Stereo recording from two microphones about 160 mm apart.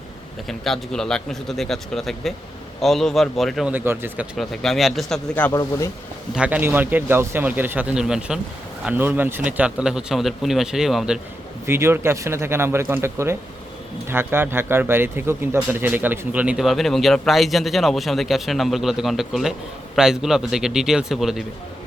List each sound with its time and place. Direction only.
0.4 s a man's voice: centre (ahead or behind)
3.7 s speech: 10° right (ahead or behind)
4.4 s a man's voice: centre (ahead or behind)
6.3 s a man's voice: 10° right (ahead or behind)
11.6 s a man's voice: 15° right (ahead or behind)